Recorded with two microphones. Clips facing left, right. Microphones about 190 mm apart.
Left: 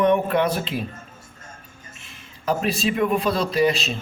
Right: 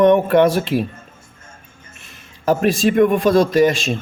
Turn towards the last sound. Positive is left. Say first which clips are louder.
# right 5 dB
turn(degrees=-45)  # may be behind; listen again after turning